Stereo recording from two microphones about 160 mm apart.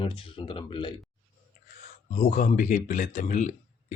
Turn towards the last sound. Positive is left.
turn(degrees=50)  # may be behind; listen again after turning